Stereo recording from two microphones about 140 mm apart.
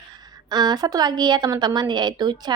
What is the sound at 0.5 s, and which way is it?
Speech, 30° right (ahead or behind).